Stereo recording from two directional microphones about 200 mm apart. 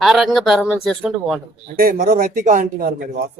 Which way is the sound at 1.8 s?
45° right (ahead or behind).